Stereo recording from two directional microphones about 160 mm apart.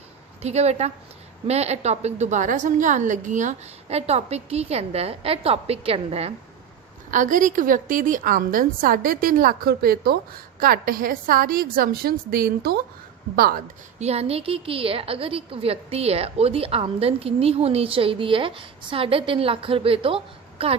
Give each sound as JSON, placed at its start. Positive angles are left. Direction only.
{"t": 0.4, "sound": "a woman's voice", "side_deg": -40}
{"t": 7.1, "sound": "a woman's voice", "side_deg": -55}
{"t": 14.0, "sound": "a woman's voice", "side_deg": -40}